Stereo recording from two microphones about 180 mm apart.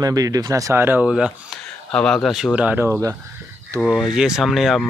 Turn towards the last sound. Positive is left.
turn(degrees=0)  # may be behind; listen again after turning